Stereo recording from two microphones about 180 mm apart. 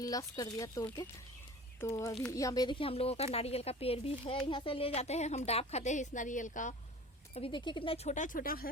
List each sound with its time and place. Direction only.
0.0 s a woman's voice: 20° left (ahead or behind); by 6.7 s 45° left (ahead or behind)
7.3 s a woman's voice: 30° left (ahead or behind); by 8.6 s 50° left (ahead or behind)